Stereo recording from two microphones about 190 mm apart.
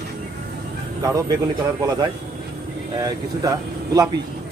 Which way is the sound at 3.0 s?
20° right (ahead or behind).